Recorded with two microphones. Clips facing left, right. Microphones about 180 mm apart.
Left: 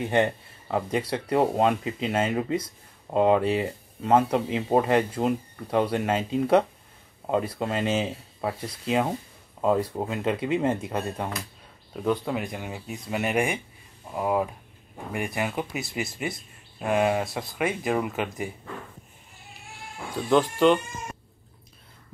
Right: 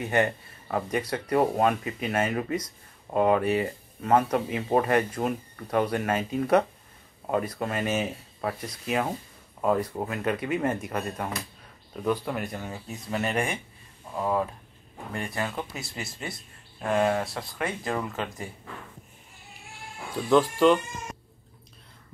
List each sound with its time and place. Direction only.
0.0 s speech: 20° left (ahead or behind)
12.4 s speech: 10° left (ahead or behind)
20.2 s speech: centre (ahead or behind)